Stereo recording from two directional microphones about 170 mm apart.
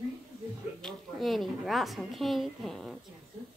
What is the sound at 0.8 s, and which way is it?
A woman's voice, centre (ahead or behind).